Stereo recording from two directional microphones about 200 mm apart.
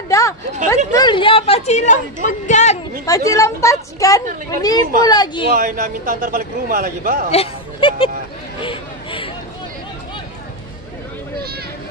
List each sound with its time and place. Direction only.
0.9 s speech: 25° left (ahead or behind)
3.1 s a woman's voice: 15° left (ahead or behind)
5.6 s a man's voice: 45° right (ahead or behind)
7.2 s speech: 30° left (ahead or behind)
8.5 s a sound: 25° left (ahead or behind)